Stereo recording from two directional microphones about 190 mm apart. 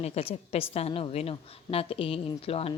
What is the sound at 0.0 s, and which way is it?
A woman's voice, 30° left (ahead or behind).